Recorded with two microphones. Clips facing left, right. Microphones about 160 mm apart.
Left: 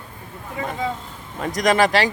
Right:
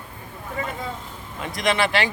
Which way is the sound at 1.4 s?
40° left (ahead or behind).